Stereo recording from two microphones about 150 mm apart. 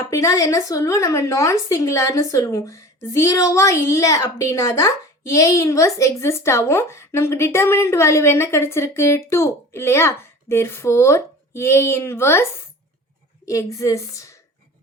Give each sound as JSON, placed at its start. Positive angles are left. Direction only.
{"t": 0.1, "sound": "a woman's voice", "side_deg": 20}